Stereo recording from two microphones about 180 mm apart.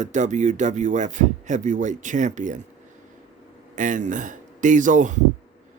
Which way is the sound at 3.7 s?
45° right (ahead or behind).